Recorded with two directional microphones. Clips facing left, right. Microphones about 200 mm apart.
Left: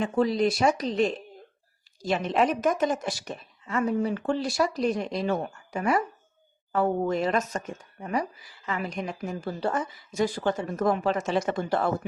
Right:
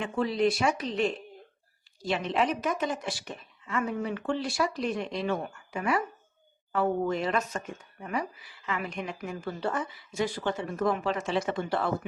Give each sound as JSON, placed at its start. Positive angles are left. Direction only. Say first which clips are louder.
{"t": 0.0, "sound": "a woman's voice", "louder": "left 3 dB", "side_deg": 40}
{"t": 8.6, "sound": "a woman's voice", "louder": "left 2 dB", "side_deg": 40}